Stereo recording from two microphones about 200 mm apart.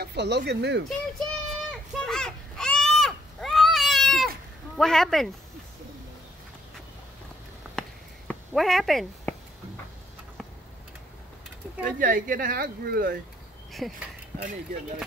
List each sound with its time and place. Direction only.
0.0 s speech: 55° right (ahead or behind)
0.8 s children playing: centre (ahead or behind)
4.7 s speech: centre (ahead or behind)
8.3 s speech: centre (ahead or behind)
12.0 s speech: 45° right (ahead or behind)
13.7 s speech: centre (ahead or behind)